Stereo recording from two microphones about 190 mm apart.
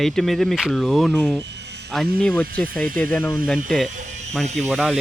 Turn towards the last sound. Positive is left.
turn(degrees=0)  # may be behind; listen again after turning